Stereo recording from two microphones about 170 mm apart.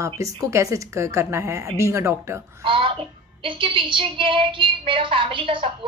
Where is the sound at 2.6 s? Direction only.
30° right (ahead or behind).